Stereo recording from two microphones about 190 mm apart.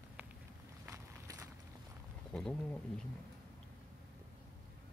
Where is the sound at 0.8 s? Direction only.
15° right (ahead or behind).